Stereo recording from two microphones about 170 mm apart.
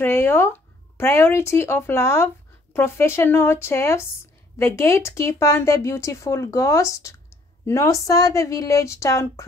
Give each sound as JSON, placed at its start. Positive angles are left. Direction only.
{"t": 0.0, "sound": "speech", "side_deg": 15}